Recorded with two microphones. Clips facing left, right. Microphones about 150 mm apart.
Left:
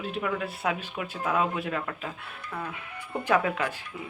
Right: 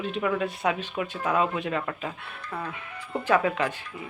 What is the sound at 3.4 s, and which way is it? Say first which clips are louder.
Speech: right 2 dB; 5° left (ahead or behind).